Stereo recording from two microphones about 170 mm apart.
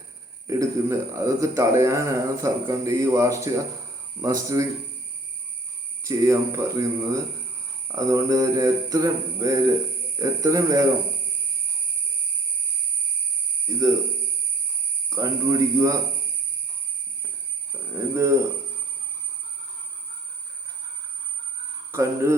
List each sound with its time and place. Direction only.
0.4 s a man's voice: 20° right (ahead or behind)
4.2 s mantra: 20° right (ahead or behind)
6.1 s a man's voice: 20° right (ahead or behind)
7.9 s mantra: 20° right (ahead or behind)
13.7 s a sound: 20° right (ahead or behind)
15.1 s mantra: 20° right (ahead or behind)
17.9 s a man's voice: 15° right (ahead or behind)
21.9 s a man's voice: 15° right (ahead or behind)